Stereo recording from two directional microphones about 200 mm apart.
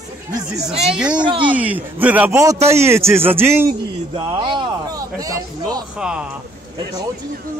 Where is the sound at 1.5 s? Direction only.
10° right (ahead or behind).